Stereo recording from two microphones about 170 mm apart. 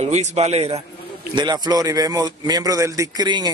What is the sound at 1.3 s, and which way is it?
A man's voice, 25° right (ahead or behind).